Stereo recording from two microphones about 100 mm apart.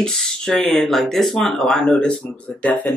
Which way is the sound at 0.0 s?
5° left (ahead or behind).